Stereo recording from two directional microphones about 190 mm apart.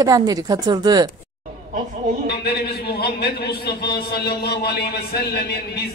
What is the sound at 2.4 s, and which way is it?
Speech, 60° left (ahead or behind).